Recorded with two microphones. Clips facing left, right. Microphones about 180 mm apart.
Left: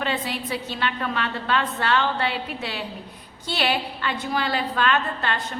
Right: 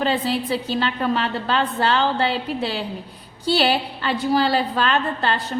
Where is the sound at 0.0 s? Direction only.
30° right (ahead or behind).